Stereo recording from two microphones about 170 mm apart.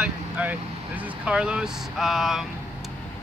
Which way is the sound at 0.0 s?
10° right (ahead or behind).